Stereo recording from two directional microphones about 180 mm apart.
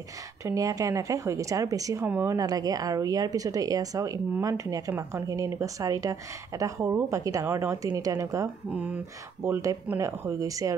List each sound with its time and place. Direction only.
0.4 s speech: 20° right (ahead or behind)